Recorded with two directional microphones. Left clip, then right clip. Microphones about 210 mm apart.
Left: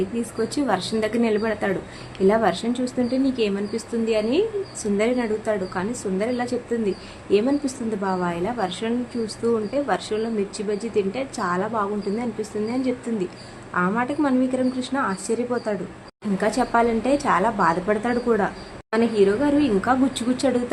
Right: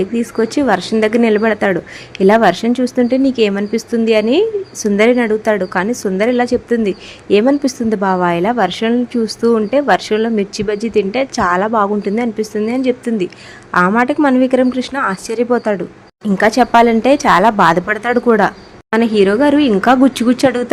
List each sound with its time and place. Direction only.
0.2 s a woman's voice: 35° right (ahead or behind)